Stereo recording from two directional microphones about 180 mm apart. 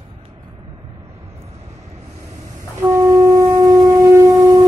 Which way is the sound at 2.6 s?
15° right (ahead or behind).